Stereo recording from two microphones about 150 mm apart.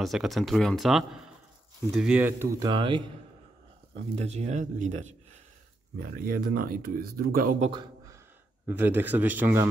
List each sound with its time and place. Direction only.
0.0 s speech: centre (ahead or behind); by 2.7 s 15° right (ahead or behind)
2.7 s a man's voice: 35° right (ahead or behind)
3.9 s speech: 45° right (ahead or behind)
6.2 s speech: 75° right (ahead or behind)
7.7 s a sound: 25° right (ahead or behind)
8.6 s speech: 15° right (ahead or behind)